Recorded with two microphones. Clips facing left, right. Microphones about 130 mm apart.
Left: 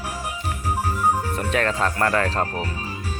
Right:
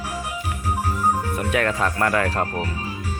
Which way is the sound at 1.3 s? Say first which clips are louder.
Right 1 dB; 10° right (ahead or behind).